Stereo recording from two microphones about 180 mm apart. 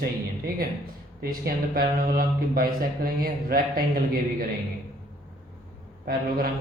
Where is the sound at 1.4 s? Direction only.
55° right (ahead or behind).